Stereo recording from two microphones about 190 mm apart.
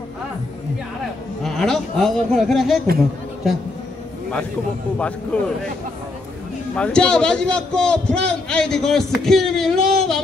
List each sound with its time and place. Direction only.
1.4 s speech: centre (ahead or behind)
4.9 s a man's voice: 5° left (ahead or behind)
6.8 s a man's voice: 5° left (ahead or behind)